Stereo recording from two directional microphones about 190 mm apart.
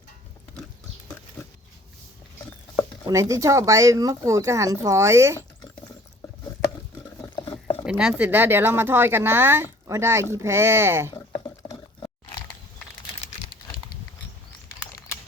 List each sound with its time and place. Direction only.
3.1 s speech: 15° right (ahead or behind)
7.9 s speech: 5° right (ahead or behind)
11.1 s liquid: 20° left (ahead or behind)